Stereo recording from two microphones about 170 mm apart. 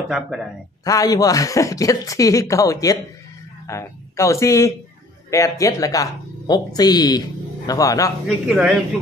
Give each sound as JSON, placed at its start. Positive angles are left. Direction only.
{"t": 0.1, "sound": "a man's voice", "side_deg": -5}
{"t": 0.8, "sound": "speech", "side_deg": 20}
{"t": 8.3, "sound": "a man's voice", "side_deg": -5}